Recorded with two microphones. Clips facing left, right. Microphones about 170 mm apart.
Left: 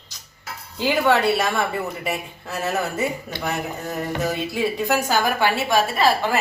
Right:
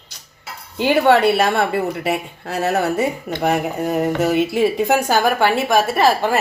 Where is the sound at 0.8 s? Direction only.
60° right (ahead or behind).